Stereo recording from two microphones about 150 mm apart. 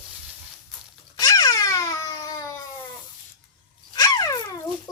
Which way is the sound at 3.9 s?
25° left (ahead or behind).